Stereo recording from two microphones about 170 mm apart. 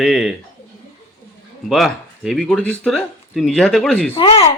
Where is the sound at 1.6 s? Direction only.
Centre (ahead or behind).